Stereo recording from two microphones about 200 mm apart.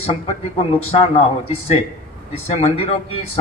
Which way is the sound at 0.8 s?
30° left (ahead or behind).